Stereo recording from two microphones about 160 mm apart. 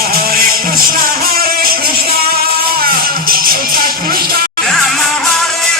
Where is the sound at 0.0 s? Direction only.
65° right (ahead or behind).